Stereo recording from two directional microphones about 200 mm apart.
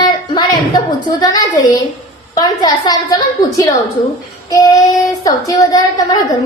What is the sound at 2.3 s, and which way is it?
A woman's voice, 20° left (ahead or behind).